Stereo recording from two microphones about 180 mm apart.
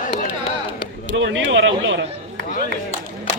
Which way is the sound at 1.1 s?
90° right.